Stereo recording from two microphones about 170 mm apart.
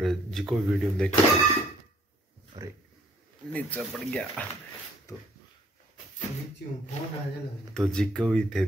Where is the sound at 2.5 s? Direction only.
20° right (ahead or behind).